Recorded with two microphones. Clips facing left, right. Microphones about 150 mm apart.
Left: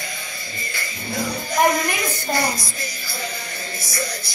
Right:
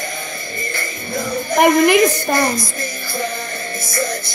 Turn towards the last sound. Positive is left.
turn(degrees=-50)  # may be behind; listen again after turning